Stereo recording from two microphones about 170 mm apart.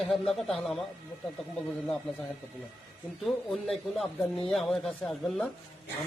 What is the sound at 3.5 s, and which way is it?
Speech, centre (ahead or behind).